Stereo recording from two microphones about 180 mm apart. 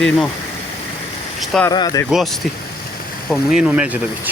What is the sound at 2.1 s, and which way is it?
Speech, centre (ahead or behind).